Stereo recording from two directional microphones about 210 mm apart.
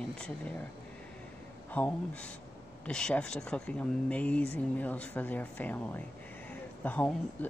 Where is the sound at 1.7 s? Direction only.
5° left (ahead or behind).